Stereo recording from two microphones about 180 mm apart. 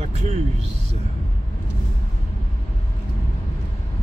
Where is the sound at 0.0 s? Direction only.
35° right (ahead or behind).